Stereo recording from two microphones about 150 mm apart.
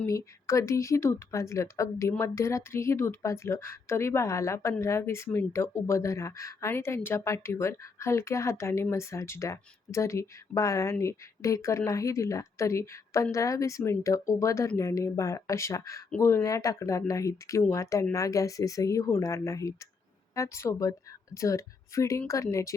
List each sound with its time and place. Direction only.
0.0 s speech: 20° left (ahead or behind)